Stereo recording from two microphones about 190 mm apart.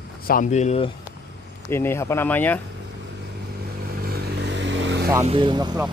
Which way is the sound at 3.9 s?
55° right (ahead or behind).